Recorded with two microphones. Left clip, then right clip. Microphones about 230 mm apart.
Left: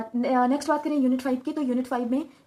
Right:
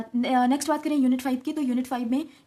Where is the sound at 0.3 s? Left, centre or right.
Right.